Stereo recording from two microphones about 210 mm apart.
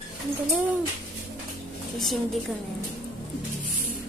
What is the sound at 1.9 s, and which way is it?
Speech, centre (ahead or behind).